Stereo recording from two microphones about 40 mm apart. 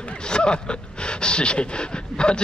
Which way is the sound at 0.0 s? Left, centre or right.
Left.